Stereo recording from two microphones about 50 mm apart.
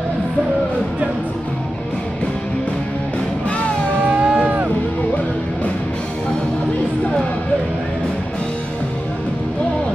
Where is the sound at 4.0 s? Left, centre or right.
Right.